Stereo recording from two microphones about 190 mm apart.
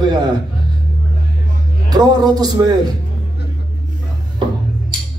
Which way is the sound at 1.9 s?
20° right (ahead or behind).